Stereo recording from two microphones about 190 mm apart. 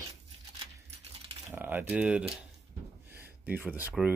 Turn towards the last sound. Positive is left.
turn(degrees=-10)  # may be behind; listen again after turning